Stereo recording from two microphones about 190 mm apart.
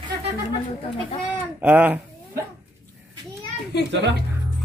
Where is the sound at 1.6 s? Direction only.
10° right (ahead or behind).